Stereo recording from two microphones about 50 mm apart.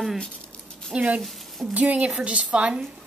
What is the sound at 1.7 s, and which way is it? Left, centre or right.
A woman's voice, right.